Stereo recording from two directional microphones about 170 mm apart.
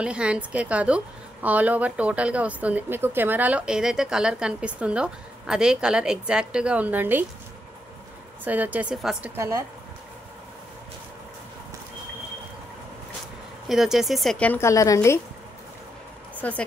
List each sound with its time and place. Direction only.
0.0 s a woman's voice: 5° right (ahead or behind)
8.5 s a woman's voice: 10° right (ahead or behind)
9.4 s a woman's voice: 15° right (ahead or behind)
13.7 s speech: centre (ahead or behind); by 15.1 s 15° left (ahead or behind)
16.3 s speech: 10° left (ahead or behind)